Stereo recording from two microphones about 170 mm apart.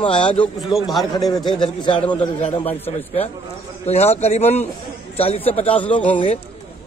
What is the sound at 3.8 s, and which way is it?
A man's voice, 40° left (ahead or behind).